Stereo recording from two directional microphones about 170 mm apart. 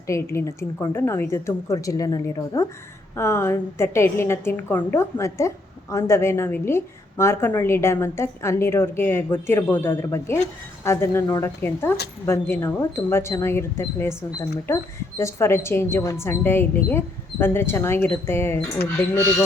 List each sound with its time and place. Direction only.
0.1 s a woman's voice: 15° left (ahead or behind)